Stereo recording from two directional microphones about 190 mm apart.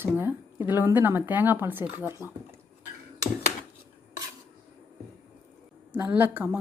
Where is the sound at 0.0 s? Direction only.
10° right (ahead or behind).